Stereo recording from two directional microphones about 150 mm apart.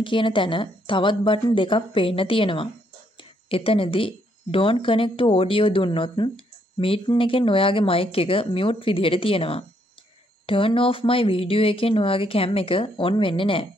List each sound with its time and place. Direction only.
0.0 s speech: 35° left (ahead or behind)